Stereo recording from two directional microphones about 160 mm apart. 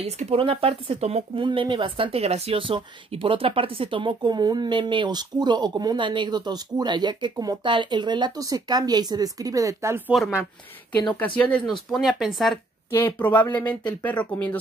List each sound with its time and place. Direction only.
0.0 s speech: 40° right (ahead or behind); by 10.1 s 15° right (ahead or behind)
11.1 s speech: 10° left (ahead or behind)
12.9 s speech: 10° left (ahead or behind)